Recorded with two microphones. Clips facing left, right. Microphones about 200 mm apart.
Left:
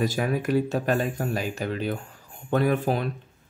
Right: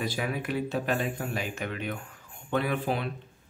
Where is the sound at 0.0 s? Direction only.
45° left (ahead or behind).